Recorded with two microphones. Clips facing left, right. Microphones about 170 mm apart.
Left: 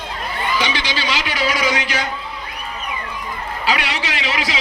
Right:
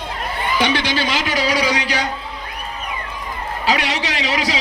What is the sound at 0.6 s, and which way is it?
Music, 55° right (ahead or behind).